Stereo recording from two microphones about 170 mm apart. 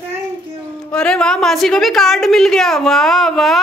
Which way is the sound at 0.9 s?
5° left (ahead or behind).